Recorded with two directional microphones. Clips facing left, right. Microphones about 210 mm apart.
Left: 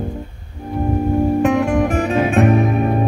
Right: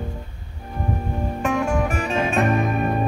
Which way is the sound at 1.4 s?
65° left (ahead or behind).